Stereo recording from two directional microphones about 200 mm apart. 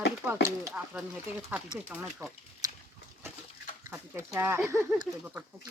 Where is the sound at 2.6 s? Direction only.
20° right (ahead or behind).